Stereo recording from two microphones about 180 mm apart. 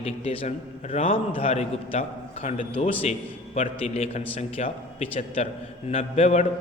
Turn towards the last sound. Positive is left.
turn(degrees=40)  # may be behind; listen again after turning